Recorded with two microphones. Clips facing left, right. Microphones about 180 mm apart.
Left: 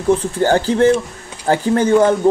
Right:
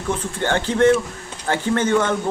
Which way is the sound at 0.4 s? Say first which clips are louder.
Left 1 dB; 35° left (ahead or behind).